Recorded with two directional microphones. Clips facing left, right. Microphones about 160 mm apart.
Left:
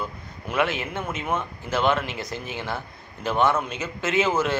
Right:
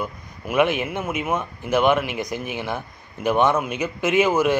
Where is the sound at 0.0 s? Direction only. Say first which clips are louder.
Right 3 dB; 15° right (ahead or behind).